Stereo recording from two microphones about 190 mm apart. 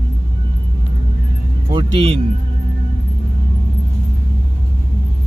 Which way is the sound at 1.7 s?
25° right (ahead or behind).